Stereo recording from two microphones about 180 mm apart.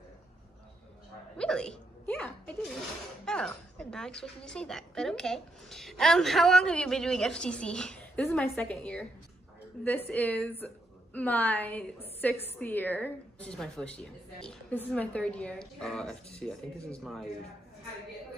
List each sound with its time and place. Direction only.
1.4 s hiccup: 5° left (ahead or behind)
3.3 s a woman's voice: 5° left (ahead or behind)